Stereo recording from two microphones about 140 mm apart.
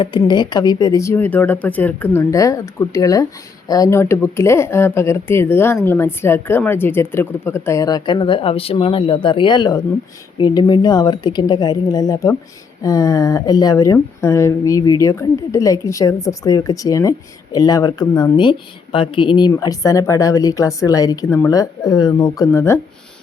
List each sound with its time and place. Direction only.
0.0 s speech: 30° left (ahead or behind)